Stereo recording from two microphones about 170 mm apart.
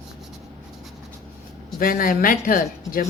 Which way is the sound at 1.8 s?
55° left (ahead or behind).